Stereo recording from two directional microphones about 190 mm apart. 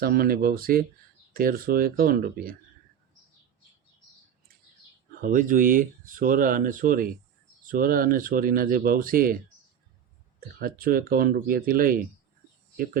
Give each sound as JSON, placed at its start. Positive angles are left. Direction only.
{"t": 0.0, "sound": "speech", "side_deg": -50}
{"t": 5.2, "sound": "speech", "side_deg": -45}
{"t": 10.6, "sound": "speech", "side_deg": -50}